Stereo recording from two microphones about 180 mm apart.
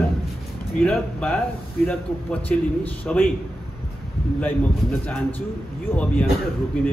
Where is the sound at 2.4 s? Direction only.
10° left (ahead or behind).